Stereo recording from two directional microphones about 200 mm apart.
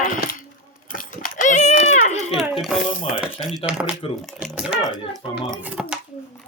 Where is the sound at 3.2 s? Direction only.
5° right (ahead or behind).